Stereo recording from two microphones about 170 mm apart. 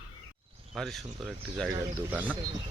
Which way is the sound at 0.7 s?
Centre (ahead or behind).